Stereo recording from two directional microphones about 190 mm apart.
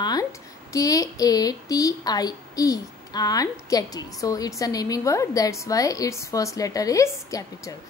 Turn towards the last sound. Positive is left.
turn(degrees=15)  # may be behind; listen again after turning